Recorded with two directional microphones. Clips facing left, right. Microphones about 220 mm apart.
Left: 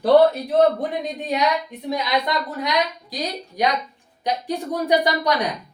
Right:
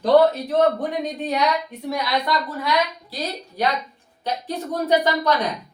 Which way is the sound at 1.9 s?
20° left (ahead or behind).